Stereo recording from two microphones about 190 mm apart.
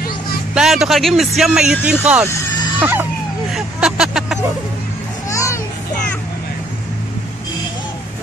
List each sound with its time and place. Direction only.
0.6 s speech: centre (ahead or behind)
3.5 s vehicle: 5° right (ahead or behind)
5.3 s music: 15° left (ahead or behind)